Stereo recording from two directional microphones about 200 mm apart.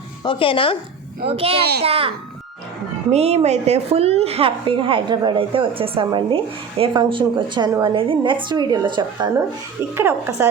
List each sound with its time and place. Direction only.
0.3 s speech: 25° left (ahead or behind)
1.2 s a woman's voice: 30° right (ahead or behind)
9.9 s speech: 10° right (ahead or behind)